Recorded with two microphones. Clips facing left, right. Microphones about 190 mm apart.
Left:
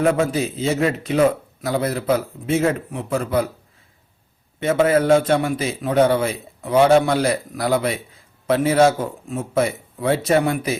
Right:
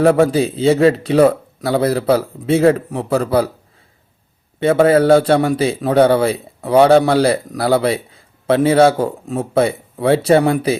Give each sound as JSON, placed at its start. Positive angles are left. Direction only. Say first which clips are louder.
{"t": 0.3, "sound": "speech", "louder": "right 7 dB", "side_deg": -30}
{"t": 4.9, "sound": "a man's voice", "louder": "right 4 dB", "side_deg": -35}